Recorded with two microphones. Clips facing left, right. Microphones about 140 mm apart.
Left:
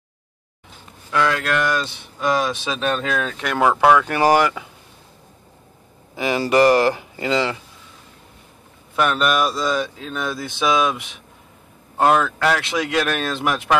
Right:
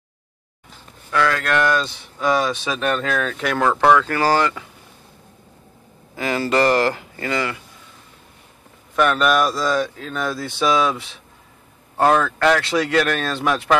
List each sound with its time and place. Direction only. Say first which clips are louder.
1.1 s speech: even; 15° left (ahead or behind)
2.1 s speech: right 1 dB; centre (ahead or behind)
2.4 s speech: right 1 dB; 15° left (ahead or behind)
3.3 s speech: right 3 dB; centre (ahead or behind)
3.5 s speech: left 1 dB; 10° left (ahead or behind)
6.1 s speech: left 2 dB; 15° left (ahead or behind)
8.9 s speech: right 2 dB; 10° left (ahead or behind)